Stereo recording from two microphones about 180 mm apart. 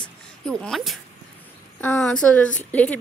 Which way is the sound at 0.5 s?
5° left (ahead or behind).